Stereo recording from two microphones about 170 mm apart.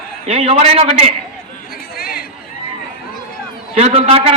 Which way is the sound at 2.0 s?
60° left (ahead or behind).